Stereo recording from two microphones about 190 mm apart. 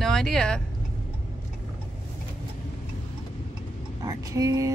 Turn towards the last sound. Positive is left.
turn(degrees=-15)  # may be behind; listen again after turning